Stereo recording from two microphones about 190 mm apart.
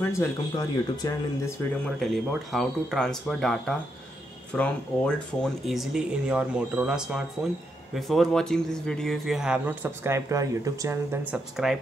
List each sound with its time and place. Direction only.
0.0 s speech: 15° left (ahead or behind)
2.0 s speech: centre (ahead or behind)